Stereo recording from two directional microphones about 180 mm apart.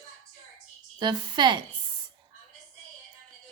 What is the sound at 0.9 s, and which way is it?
Speech, 25° right (ahead or behind).